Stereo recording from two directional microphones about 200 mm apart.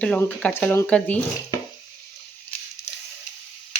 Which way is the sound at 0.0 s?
5° left (ahead or behind).